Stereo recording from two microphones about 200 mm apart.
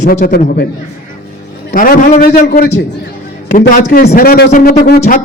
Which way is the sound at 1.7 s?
45° left (ahead or behind).